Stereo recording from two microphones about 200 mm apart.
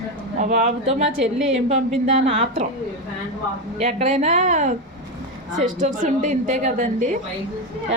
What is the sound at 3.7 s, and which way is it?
A woman's voice, 35° right (ahead or behind).